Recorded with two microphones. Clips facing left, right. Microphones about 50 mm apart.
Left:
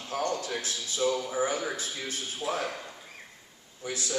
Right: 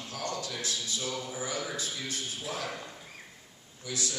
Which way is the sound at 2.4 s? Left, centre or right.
Left.